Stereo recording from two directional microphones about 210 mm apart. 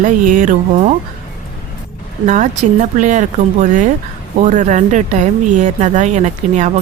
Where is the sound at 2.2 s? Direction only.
35° right (ahead or behind).